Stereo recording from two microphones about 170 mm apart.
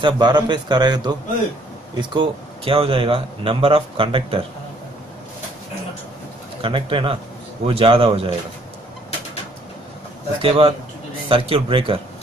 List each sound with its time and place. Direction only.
0.0 s a man's voice: 25° right (ahead or behind)
6.6 s a man's voice: 30° right (ahead or behind)
10.4 s a man's voice: 30° right (ahead or behind)